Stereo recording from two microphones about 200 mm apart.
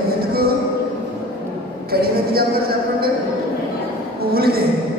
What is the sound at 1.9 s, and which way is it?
Music, 50° right (ahead or behind).